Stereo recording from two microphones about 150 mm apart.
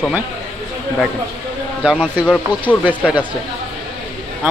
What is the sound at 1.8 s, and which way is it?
Speech, 5° right (ahead or behind).